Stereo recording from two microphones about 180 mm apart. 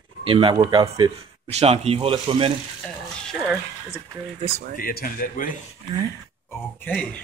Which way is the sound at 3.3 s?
Centre (ahead or behind).